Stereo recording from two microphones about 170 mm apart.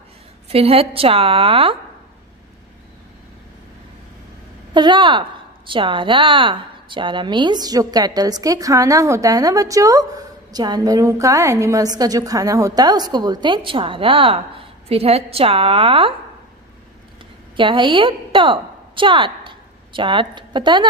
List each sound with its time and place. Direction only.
0.5 s a woman's voice: 35° right (ahead or behind)
4.7 s a woman's voice: 25° right (ahead or behind)
17.6 s a woman's voice: 30° right (ahead or behind)